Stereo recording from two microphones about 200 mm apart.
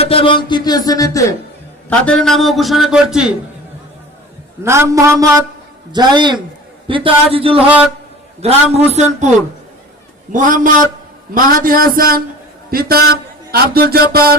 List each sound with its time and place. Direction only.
0.0 s speech: 30° left (ahead or behind)
1.9 s a man's voice: 5° left (ahead or behind)
4.6 s a man's voice: 15° right (ahead or behind); by 9.3 s 35° right (ahead or behind)
10.3 s a man's voice: 40° right (ahead or behind)
11.5 s music: 45° right (ahead or behind)